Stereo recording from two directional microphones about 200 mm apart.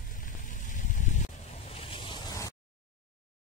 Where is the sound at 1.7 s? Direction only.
30° left (ahead or behind).